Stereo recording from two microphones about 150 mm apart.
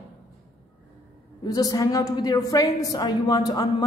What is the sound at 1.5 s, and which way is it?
A woman's voice, 25° left (ahead or behind).